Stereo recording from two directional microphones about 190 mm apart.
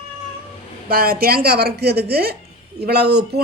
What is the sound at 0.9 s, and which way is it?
A woman's voice, 50° right (ahead or behind).